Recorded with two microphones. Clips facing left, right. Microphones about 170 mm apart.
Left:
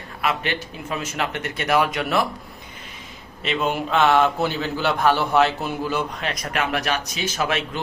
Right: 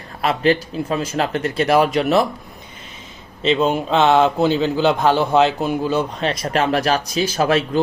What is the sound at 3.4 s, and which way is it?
A man's voice, 25° right (ahead or behind).